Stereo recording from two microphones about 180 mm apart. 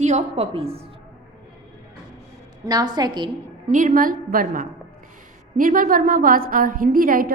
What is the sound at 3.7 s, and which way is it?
A woman's voice, 50° right (ahead or behind).